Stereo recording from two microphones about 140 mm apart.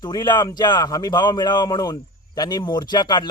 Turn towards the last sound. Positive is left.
turn(degrees=30)  # may be behind; listen again after turning